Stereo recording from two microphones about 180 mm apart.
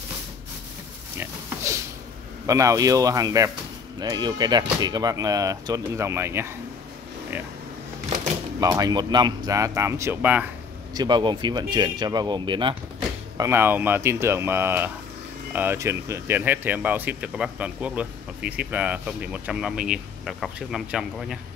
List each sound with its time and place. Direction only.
1.2 s speech: 15° right (ahead or behind)
8.5 s speech: 20° right (ahead or behind)
11.0 s speech: 25° right (ahead or behind)
13.4 s speech: 10° right (ahead or behind)